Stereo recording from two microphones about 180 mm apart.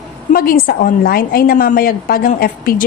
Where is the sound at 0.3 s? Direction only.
55° left (ahead or behind).